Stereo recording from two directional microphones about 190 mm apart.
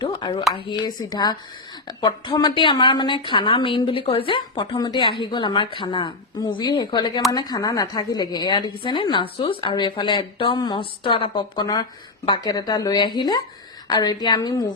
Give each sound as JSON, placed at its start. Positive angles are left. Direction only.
{"t": 0.0, "sound": "a woman's voice", "side_deg": 25}